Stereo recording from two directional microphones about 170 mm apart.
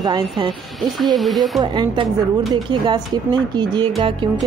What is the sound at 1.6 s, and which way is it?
A woman's voice, 25° right (ahead or behind).